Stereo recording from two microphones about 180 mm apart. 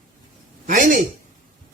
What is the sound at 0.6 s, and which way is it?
Speech, 50° right (ahead or behind).